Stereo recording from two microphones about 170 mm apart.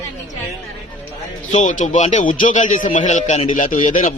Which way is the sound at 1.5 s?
45° left (ahead or behind).